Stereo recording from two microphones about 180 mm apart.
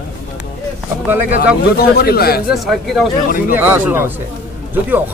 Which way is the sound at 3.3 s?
50° left (ahead or behind).